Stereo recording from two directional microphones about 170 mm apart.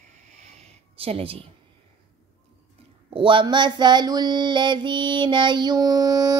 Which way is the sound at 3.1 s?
30° right (ahead or behind).